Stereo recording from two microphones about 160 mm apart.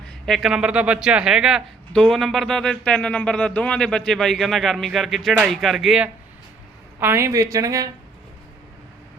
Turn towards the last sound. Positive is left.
turn(degrees=-20)  # may be behind; listen again after turning